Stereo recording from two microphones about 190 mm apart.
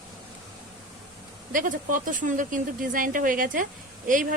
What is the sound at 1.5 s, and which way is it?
A woman's voice, 45° right (ahead or behind).